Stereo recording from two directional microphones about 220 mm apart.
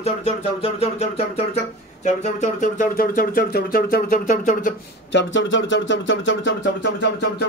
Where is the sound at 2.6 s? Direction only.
40° left (ahead or behind).